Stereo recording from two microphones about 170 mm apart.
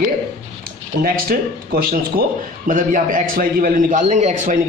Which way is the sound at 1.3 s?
55° right (ahead or behind).